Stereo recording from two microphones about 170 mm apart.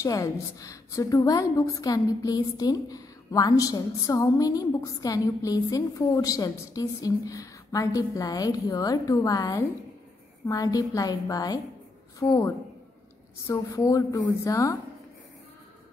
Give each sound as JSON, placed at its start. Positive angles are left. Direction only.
{"t": 0.0, "sound": "a woman's voice", "side_deg": 20}